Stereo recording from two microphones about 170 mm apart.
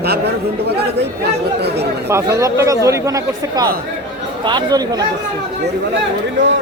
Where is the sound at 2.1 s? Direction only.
15° right (ahead or behind).